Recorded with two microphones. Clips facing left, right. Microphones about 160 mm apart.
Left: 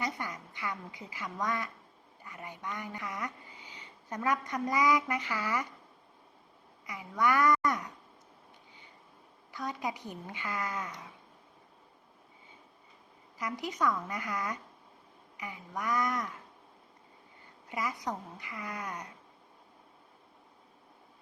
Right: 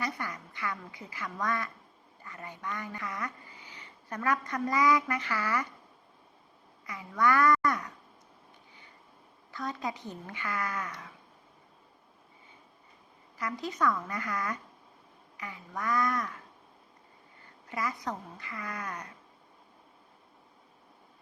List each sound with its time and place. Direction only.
0.0 s a woman's voice: 15° left (ahead or behind)
6.8 s speech: 15° left (ahead or behind)
9.5 s speech: 15° left (ahead or behind)
13.4 s speech: 15° left (ahead or behind)
17.7 s speech: 15° left (ahead or behind)